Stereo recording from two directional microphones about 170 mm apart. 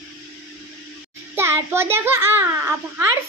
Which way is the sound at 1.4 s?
15° right (ahead or behind).